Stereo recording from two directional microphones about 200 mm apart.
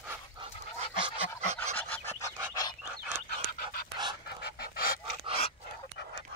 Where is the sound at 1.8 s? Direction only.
10° left (ahead or behind).